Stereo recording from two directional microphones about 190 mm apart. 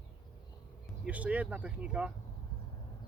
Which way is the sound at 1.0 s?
5° right (ahead or behind).